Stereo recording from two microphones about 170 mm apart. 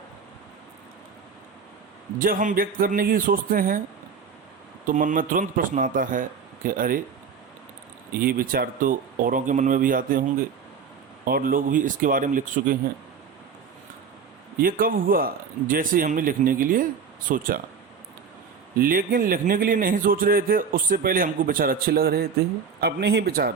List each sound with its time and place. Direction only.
2.1 s a man's voice: 55° right (ahead or behind)
4.9 s speech: 50° right (ahead or behind)
8.1 s speech: 60° right (ahead or behind)
11.3 s speech: 55° right (ahead or behind)
14.6 s a man's voice: 55° right (ahead or behind)
18.8 s a man's voice: 55° right (ahead or behind)